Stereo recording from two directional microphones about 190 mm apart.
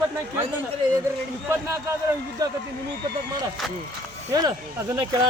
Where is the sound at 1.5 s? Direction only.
15° right (ahead or behind).